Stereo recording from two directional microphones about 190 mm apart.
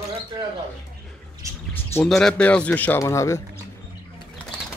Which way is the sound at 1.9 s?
5° left (ahead or behind).